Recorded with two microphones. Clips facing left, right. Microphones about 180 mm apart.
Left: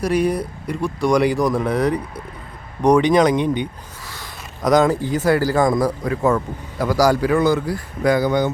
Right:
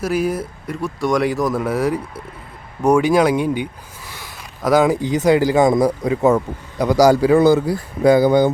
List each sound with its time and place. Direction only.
0.0 s speech: 5° right (ahead or behind); by 8.4 s 30° right (ahead or behind)